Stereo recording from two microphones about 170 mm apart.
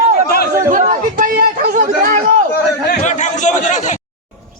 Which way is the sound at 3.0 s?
45° left (ahead or behind).